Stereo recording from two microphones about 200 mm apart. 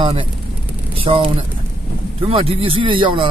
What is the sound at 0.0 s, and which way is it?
Speech, 25° right (ahead or behind).